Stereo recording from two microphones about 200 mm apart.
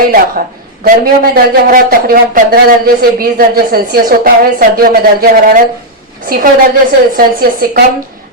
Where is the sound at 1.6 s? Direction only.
45° right (ahead or behind).